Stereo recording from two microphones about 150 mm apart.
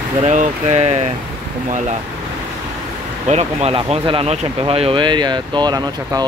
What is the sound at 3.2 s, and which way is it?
Speech, 45° right (ahead or behind).